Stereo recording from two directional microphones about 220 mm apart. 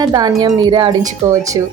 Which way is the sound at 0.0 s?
20° right (ahead or behind).